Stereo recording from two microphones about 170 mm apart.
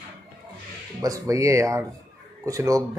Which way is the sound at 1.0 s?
20° right (ahead or behind).